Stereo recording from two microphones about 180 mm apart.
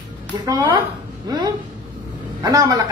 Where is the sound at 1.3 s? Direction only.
20° right (ahead or behind).